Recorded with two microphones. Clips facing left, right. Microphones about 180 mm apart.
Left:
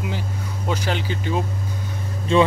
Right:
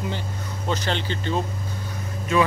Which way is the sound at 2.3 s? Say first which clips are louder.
Left 4 dB; 30° left (ahead or behind).